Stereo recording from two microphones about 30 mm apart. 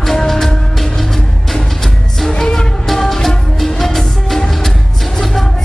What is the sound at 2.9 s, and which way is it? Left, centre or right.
Music, centre.